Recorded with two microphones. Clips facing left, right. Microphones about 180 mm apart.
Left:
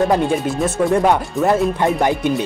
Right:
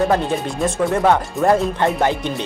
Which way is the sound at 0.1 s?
10° left (ahead or behind).